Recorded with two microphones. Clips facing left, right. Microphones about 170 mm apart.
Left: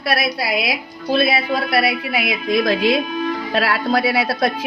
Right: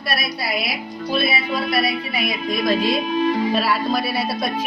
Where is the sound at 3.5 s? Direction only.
85° left.